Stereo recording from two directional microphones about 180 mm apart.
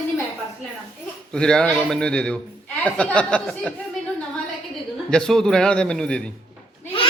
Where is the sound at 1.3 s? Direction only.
5° left (ahead or behind).